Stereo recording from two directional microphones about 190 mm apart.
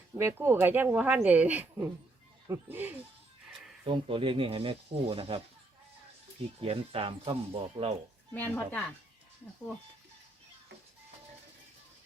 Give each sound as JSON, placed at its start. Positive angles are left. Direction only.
{"t": 0.1, "sound": "speech", "side_deg": -10}
{"t": 3.8, "sound": "speech", "side_deg": -25}
{"t": 6.6, "sound": "speech", "side_deg": -30}
{"t": 8.3, "sound": "speech", "side_deg": 10}